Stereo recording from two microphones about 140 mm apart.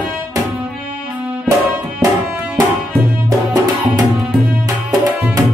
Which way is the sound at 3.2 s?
25° right (ahead or behind).